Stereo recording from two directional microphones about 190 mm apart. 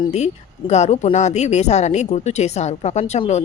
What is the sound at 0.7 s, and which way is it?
Speech, 35° left (ahead or behind).